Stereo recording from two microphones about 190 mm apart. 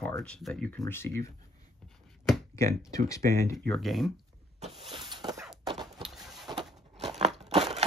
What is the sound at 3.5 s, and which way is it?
Speech, centre (ahead or behind).